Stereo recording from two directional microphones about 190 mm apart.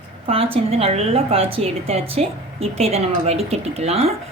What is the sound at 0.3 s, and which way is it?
A woman's voice, 30° right (ahead or behind).